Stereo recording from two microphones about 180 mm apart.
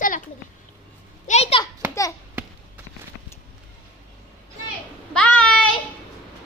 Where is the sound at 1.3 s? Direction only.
35° left (ahead or behind).